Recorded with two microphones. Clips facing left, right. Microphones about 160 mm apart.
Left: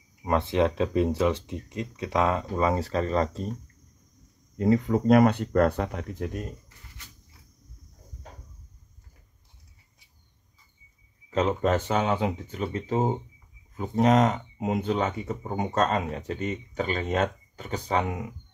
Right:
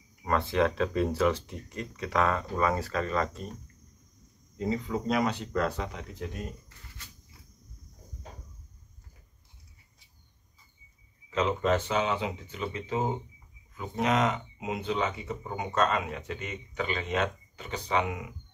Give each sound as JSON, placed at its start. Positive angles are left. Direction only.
{"t": 0.2, "sound": "speech", "side_deg": 20}
{"t": 4.6, "sound": "speech", "side_deg": 60}
{"t": 11.2, "sound": "speech", "side_deg": 45}